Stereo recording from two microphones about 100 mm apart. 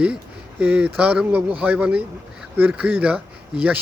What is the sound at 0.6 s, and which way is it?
Speech, 15° right (ahead or behind).